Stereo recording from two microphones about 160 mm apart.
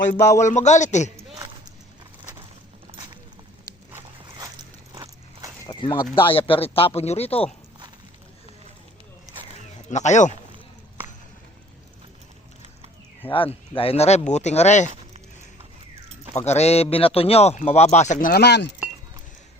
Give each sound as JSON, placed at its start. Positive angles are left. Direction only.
{"t": 0.1, "sound": "a man's voice", "side_deg": 50}
{"t": 4.9, "sound": "a sound", "side_deg": -20}
{"t": 5.8, "sound": "speech", "side_deg": 30}
{"t": 9.9, "sound": "a man's voice", "side_deg": 50}
{"t": 13.3, "sound": "a man's voice", "side_deg": 35}
{"t": 16.3, "sound": "a man's voice", "side_deg": 45}